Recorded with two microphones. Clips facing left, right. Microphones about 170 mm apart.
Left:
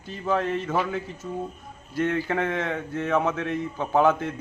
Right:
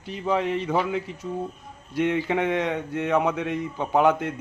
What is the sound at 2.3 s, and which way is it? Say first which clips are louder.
A man's voice: right 2 dB; 15° right (ahead or behind).